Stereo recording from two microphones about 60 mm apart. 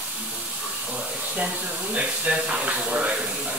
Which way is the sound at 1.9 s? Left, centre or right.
Centre.